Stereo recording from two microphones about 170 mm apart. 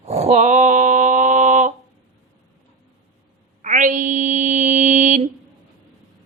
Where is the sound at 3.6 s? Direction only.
50° right (ahead or behind).